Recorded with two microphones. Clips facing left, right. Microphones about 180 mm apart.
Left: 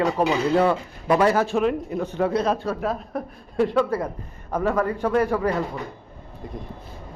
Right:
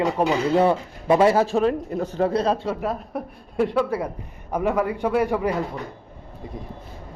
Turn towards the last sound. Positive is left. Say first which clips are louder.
# even
turn(degrees=-5)  # may be behind; listen again after turning